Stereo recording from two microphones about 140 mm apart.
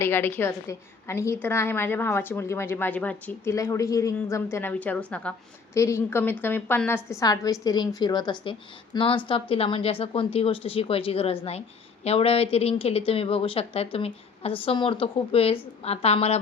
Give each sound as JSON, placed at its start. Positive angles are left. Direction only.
{"t": 0.0, "sound": "a woman's voice", "side_deg": 15}
{"t": 3.5, "sound": "a woman's voice", "side_deg": 20}
{"t": 5.7, "sound": "a woman's voice", "side_deg": 20}